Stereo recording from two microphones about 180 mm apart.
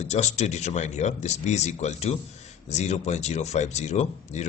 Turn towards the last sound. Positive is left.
turn(degrees=40)  # may be behind; listen again after turning